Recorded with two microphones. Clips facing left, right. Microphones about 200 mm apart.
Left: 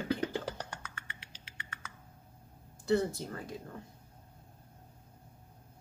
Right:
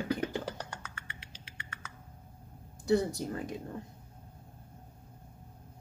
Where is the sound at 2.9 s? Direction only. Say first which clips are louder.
Right 2 dB; 15° right (ahead or behind).